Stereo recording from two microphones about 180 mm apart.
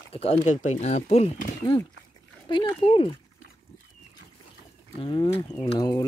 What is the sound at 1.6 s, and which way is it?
Speech, 20° left (ahead or behind).